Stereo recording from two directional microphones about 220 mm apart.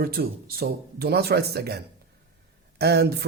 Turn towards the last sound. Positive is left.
turn(degrees=-45)  # may be behind; listen again after turning